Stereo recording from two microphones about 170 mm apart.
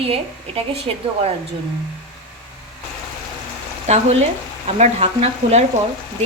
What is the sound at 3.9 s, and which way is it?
Speech, 40° right (ahead or behind).